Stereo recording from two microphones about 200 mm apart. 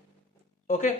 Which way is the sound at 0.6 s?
40° left (ahead or behind).